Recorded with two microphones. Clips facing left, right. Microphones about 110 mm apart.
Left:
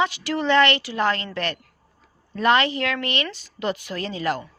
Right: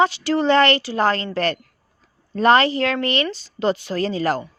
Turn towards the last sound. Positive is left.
turn(degrees=-35)  # may be behind; listen again after turning